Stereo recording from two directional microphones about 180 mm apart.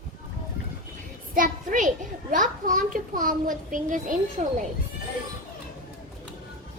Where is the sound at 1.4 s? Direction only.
45° right (ahead or behind).